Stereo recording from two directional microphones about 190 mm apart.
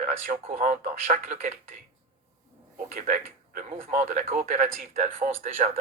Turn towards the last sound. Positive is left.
turn(degrees=-35)  # may be behind; listen again after turning